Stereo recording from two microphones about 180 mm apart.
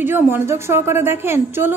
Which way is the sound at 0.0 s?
10° right (ahead or behind).